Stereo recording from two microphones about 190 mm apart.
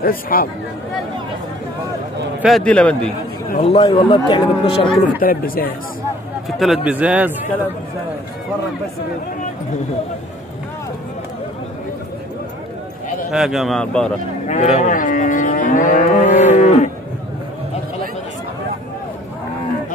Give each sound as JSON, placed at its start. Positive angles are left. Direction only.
{"t": 0.0, "sound": "livestock", "side_deg": 50}
{"t": 2.4, "sound": "speech", "side_deg": 5}
{"t": 3.6, "sound": "speech", "side_deg": 30}
{"t": 5.0, "sound": "livestock", "side_deg": 50}
{"t": 6.6, "sound": "speech", "side_deg": -5}
{"t": 13.3, "sound": "speech", "side_deg": 0}
{"t": 14.5, "sound": "livestock", "side_deg": 40}
{"t": 16.5, "sound": "cattle", "side_deg": 40}